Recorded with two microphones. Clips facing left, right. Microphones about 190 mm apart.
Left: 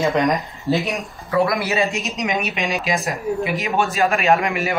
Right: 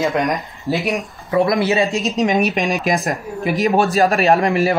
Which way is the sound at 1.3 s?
25° right (ahead or behind).